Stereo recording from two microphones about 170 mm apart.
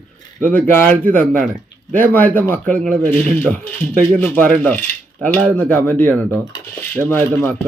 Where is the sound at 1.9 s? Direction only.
10° left (ahead or behind).